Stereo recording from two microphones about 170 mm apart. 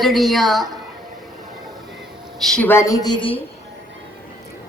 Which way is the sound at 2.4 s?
5° left (ahead or behind).